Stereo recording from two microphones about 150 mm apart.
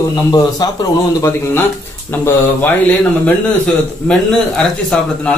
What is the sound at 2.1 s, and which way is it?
A man's voice, 10° left (ahead or behind).